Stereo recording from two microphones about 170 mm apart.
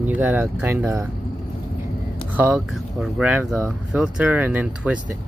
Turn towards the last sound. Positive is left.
turn(degrees=-10)  # may be behind; listen again after turning